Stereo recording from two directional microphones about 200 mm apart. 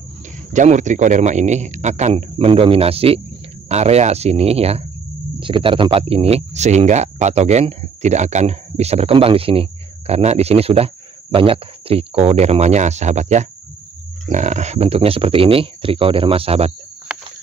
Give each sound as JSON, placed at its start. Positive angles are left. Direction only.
{"t": 0.5, "sound": "speech", "side_deg": -35}